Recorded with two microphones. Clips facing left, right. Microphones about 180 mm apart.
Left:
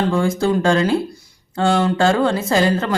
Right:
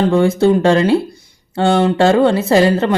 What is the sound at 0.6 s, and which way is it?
A woman's voice, 30° right (ahead or behind).